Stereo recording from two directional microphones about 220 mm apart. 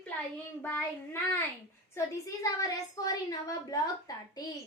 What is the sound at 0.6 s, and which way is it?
A woman's voice, 10° left (ahead or behind).